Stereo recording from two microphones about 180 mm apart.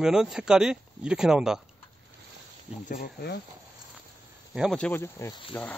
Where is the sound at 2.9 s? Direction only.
55° left (ahead or behind).